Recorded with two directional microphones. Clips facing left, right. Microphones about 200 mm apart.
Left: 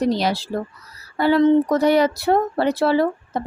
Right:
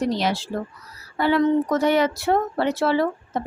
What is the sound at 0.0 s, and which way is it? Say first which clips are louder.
A woman's voice: left 3 dB; 35° left (ahead or behind).